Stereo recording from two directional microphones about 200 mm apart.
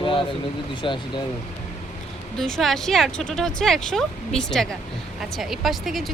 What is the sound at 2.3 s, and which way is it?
Speech, centre (ahead or behind).